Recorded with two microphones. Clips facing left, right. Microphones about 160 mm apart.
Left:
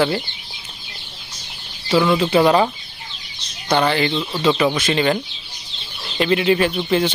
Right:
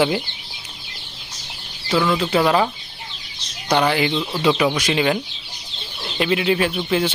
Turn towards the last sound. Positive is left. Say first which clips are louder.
# left 2 dB
turn(degrees=-5)  # may be behind; listen again after turning